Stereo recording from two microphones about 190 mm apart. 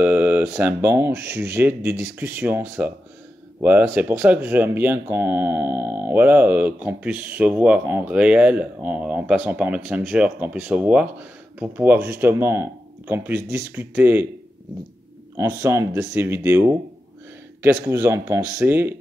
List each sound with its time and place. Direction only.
0.0 s speech: 10° right (ahead or behind)
15.3 s speech: 15° right (ahead or behind)